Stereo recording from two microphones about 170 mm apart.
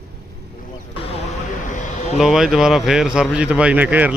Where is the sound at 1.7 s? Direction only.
45° left (ahead or behind).